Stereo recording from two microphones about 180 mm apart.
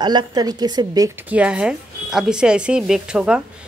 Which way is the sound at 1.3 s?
5° right (ahead or behind).